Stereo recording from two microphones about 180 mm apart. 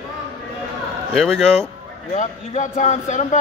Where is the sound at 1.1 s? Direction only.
Centre (ahead or behind).